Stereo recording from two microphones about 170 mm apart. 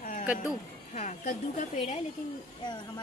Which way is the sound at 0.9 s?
45° left (ahead or behind).